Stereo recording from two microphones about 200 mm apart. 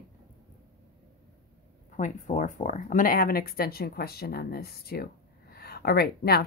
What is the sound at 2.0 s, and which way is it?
Speech, 40° left (ahead or behind).